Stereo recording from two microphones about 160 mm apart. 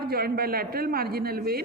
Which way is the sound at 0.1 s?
70° right (ahead or behind).